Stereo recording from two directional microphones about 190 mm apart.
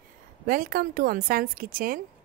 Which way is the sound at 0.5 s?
50° right (ahead or behind).